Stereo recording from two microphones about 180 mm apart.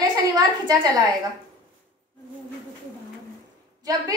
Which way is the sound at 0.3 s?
20° right (ahead or behind).